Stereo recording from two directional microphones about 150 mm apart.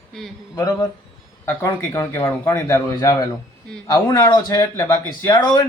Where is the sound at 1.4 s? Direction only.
15° left (ahead or behind).